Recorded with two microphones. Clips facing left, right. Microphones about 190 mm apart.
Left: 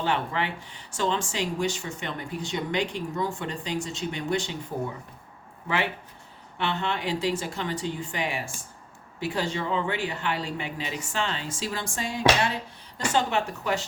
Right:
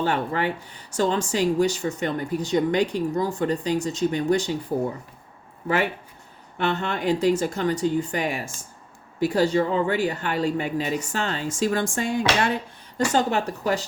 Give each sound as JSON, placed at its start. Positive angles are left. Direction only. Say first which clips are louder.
{"t": 0.0, "sound": "speech", "louder": "right 4 dB", "side_deg": -45}
{"t": 5.6, "sound": "a woman's voice", "louder": "right 5 dB", "side_deg": -45}
{"t": 13.1, "sound": "speech", "louder": "right 1 dB", "side_deg": -40}